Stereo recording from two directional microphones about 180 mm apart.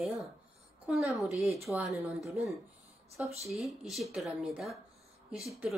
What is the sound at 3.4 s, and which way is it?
A woman's voice, centre (ahead or behind).